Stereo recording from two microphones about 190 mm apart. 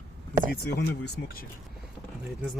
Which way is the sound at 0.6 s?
65° left (ahead or behind).